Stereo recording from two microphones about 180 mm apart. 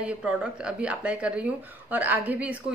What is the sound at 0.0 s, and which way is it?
Speech, 5° right (ahead or behind).